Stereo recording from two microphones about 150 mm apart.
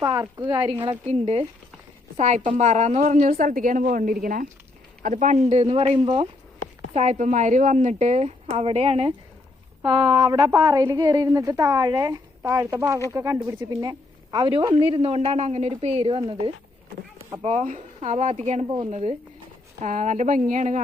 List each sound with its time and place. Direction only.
0.0 s a woman's voice: 25° right (ahead or behind); by 1.5 s 40° right (ahead or behind)
2.1 s speech: 50° right (ahead or behind)
3.3 s a woman's voice: 70° right (ahead or behind)
5.0 s speech: 55° right (ahead or behind); by 6.2 s 40° right (ahead or behind)
6.9 s a woman's voice: 50° right (ahead or behind); by 14.8 s 30° right (ahead or behind)
14.8 s a woman's voice: 40° right (ahead or behind)
17.6 s a woman's voice: 55° right (ahead or behind)